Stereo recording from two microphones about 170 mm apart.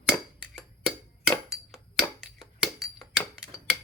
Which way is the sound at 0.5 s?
Centre (ahead or behind).